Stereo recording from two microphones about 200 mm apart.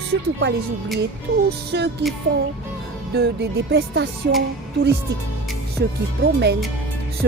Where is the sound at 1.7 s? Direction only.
55° right (ahead or behind).